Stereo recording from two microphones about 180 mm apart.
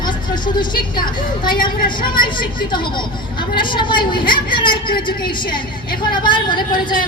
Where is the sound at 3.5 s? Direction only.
25° left (ahead or behind).